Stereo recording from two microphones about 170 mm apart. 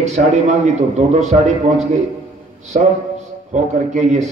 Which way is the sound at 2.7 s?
45° right (ahead or behind).